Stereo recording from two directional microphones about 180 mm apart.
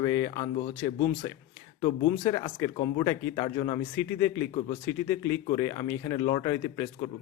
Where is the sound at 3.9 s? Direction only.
15° left (ahead or behind).